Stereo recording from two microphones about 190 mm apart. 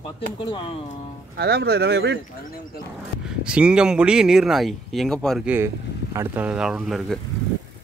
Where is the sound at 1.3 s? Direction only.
60° right (ahead or behind).